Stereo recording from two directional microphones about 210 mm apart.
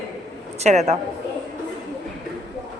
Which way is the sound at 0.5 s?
30° right (ahead or behind).